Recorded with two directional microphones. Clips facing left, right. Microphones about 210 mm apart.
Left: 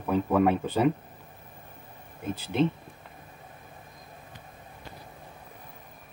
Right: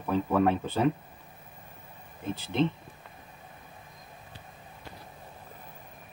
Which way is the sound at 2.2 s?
10° left (ahead or behind).